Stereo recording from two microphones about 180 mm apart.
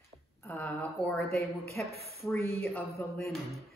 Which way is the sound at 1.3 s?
60° left (ahead or behind).